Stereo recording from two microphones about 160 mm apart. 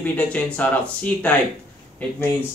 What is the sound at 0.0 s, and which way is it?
Speech, 10° left (ahead or behind).